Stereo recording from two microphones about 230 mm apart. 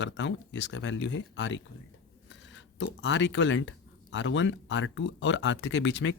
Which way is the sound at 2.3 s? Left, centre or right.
Left.